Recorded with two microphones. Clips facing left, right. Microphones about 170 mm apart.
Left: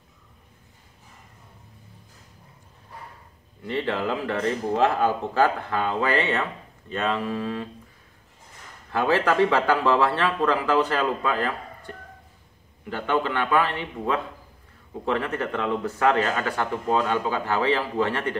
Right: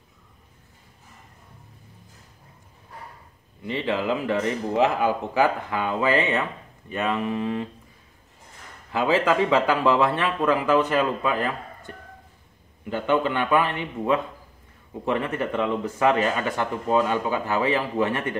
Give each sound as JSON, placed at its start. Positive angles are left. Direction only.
{"t": 3.6, "sound": "a man's voice", "side_deg": -15}
{"t": 8.9, "sound": "speech", "side_deg": -15}
{"t": 12.9, "sound": "a man's voice", "side_deg": -20}